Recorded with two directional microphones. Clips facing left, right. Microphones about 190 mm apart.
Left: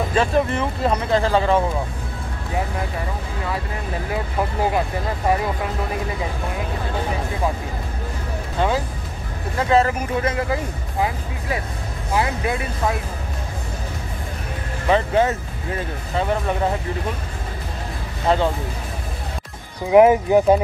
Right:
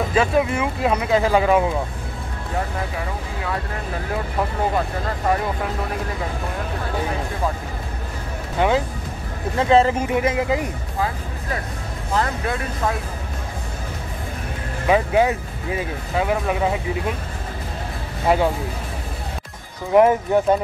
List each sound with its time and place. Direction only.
0.1 s speech: 5° right (ahead or behind)
8.5 s speech: 20° right (ahead or behind)
12.1 s speech: 10° left (ahead or behind)
14.9 s speech: 10° right (ahead or behind)
18.3 s speech: 10° right (ahead or behind)
19.9 s speech: 10° left (ahead or behind)